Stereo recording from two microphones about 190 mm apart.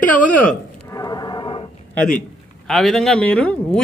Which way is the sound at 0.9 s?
20° left (ahead or behind).